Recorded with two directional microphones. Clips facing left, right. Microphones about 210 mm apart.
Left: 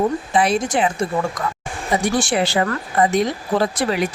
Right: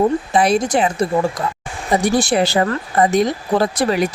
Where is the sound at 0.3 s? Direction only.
40° right (ahead or behind).